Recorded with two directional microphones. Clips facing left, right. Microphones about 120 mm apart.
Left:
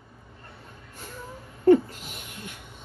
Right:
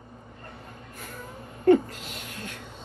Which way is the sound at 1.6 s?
55° right (ahead or behind).